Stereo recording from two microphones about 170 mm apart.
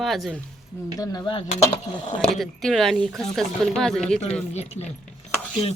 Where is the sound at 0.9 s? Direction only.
20° left (ahead or behind).